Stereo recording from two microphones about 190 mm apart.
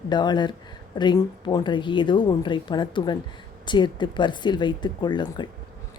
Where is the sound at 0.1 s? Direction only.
20° left (ahead or behind).